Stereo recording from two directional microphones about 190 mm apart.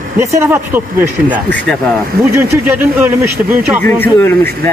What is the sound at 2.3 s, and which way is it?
Speech, 10° right (ahead or behind).